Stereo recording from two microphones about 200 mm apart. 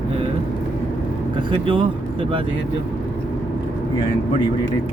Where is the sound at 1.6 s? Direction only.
25° right (ahead or behind).